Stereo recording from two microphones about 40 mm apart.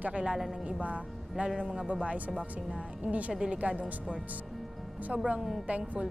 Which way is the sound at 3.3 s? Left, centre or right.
Centre.